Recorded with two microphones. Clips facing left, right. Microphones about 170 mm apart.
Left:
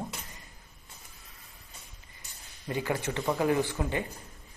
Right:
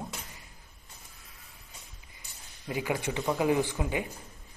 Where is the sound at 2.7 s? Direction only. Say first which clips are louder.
Even; 10° right (ahead or behind).